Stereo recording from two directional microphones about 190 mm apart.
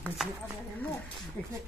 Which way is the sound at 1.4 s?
10° left (ahead or behind).